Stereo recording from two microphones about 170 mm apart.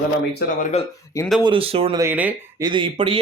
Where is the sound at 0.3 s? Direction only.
55° left (ahead or behind).